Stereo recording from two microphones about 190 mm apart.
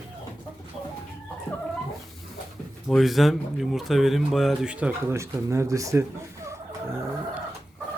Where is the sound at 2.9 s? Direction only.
Centre (ahead or behind); by 6.5 s 15° right (ahead or behind).